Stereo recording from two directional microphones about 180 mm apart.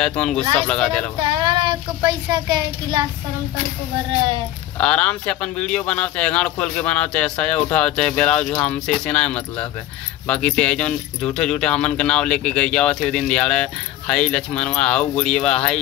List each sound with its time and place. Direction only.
0.0 s speech: 5° left (ahead or behind)
1.4 s a child's voice: 25° right (ahead or behind)
4.7 s speech: 5° left (ahead or behind)